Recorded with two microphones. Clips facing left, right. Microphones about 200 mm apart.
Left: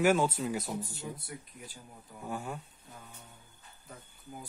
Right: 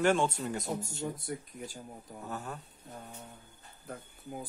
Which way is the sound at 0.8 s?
45° right (ahead or behind).